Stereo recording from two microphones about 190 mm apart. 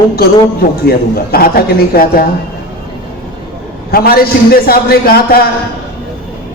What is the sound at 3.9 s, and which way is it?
A woman's voice, 50° left (ahead or behind).